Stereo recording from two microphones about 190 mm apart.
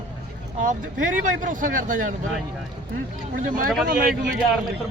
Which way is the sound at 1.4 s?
45° right (ahead or behind).